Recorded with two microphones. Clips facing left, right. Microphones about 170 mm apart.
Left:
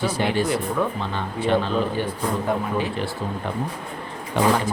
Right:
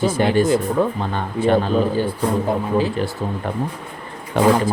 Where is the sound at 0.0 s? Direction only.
50° right (ahead or behind).